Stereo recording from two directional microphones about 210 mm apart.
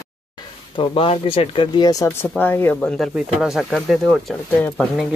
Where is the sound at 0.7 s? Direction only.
25° left (ahead or behind); by 5.0 s 5° left (ahead or behind).